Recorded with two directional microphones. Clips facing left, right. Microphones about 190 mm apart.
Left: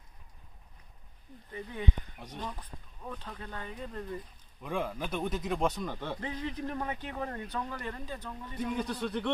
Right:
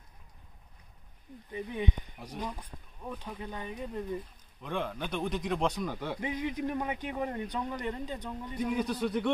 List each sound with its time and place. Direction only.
1.5 s a man's voice: 15° right (ahead or behind)
2.1 s a man's voice: 5° right (ahead or behind)
4.6 s a man's voice: 5° left (ahead or behind); by 8.5 s 15° right (ahead or behind)
8.5 s a man's voice: 5° right (ahead or behind)